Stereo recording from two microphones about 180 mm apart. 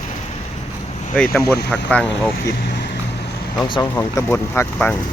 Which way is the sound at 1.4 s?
65° left (ahead or behind).